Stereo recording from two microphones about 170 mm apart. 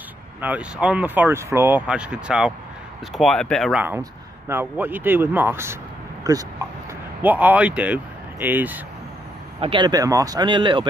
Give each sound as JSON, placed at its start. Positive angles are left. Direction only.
{"t": 0.4, "sound": "speech", "side_deg": -10}
{"t": 3.7, "sound": "speech", "side_deg": -10}
{"t": 7.2, "sound": "speech", "side_deg": -10}
{"t": 9.6, "sound": "speech", "side_deg": -30}